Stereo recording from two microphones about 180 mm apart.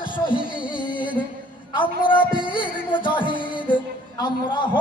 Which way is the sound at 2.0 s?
25° left (ahead or behind).